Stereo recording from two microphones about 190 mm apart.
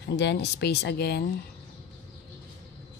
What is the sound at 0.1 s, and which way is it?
Speech, 65° left (ahead or behind).